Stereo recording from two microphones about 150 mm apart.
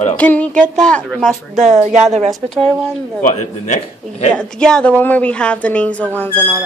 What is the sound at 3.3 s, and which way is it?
Speech, 50° left (ahead or behind).